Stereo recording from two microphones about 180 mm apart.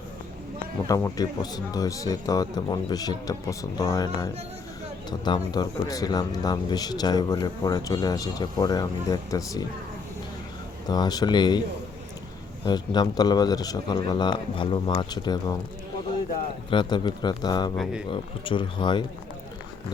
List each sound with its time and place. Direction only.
0.9 s a man's voice: 20° left (ahead or behind)
10.8 s a man's voice: 20° left (ahead or behind)
12.6 s a man's voice: 25° left (ahead or behind)
16.6 s a man's voice: 25° left (ahead or behind)